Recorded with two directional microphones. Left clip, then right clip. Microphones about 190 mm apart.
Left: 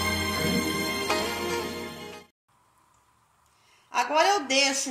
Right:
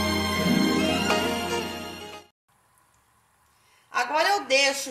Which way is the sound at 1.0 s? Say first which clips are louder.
Right 3 dB; centre (ahead or behind).